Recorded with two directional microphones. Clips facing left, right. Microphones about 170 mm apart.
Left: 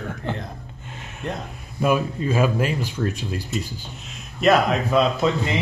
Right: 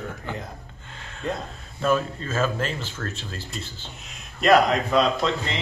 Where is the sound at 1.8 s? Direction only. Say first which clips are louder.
Left 2 dB; 10° left (ahead or behind).